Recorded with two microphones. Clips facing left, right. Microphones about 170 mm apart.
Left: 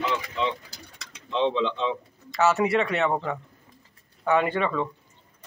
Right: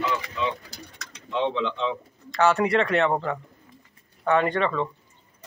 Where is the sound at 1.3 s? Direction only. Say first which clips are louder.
Left 1 dB; 20° left (ahead or behind).